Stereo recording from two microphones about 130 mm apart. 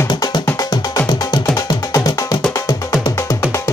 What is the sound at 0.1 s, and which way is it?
Music, 30° left (ahead or behind).